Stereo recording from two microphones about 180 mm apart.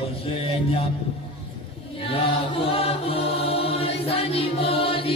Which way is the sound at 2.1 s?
30° left (ahead or behind).